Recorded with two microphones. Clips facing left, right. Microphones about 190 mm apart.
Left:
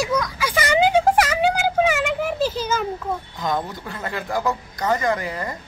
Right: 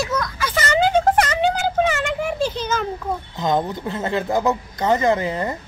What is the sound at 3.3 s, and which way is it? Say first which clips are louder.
Speech: right 7 dB; 25° right (ahead or behind).